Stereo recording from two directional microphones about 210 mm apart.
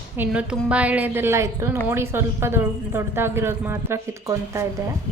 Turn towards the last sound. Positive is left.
turn(degrees=-15)  # may be behind; listen again after turning